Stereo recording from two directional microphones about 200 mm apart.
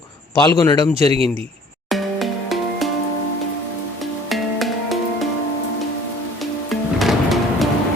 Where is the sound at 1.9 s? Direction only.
Centre (ahead or behind).